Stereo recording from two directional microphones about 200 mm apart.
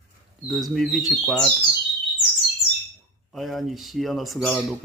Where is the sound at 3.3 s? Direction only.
Centre (ahead or behind).